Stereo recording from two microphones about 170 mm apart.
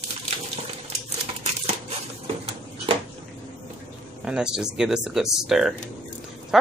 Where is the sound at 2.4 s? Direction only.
35° right (ahead or behind).